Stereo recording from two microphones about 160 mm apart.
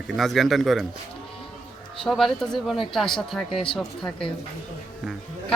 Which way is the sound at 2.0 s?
Centre (ahead or behind).